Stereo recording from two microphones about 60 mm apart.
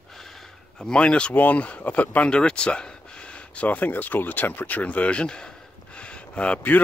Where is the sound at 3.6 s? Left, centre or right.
Left.